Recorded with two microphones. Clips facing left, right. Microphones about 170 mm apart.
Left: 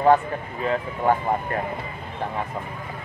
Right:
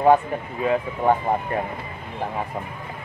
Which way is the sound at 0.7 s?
10° right (ahead or behind).